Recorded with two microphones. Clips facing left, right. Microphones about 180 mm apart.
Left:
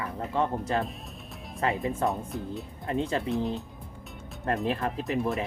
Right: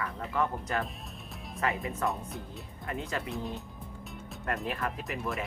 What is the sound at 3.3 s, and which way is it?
Speech, centre (ahead or behind).